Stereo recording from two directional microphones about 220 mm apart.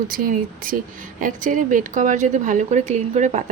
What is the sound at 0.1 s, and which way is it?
A woman's voice, 40° right (ahead or behind).